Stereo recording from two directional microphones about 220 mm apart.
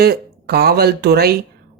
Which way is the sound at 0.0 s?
45° right (ahead or behind).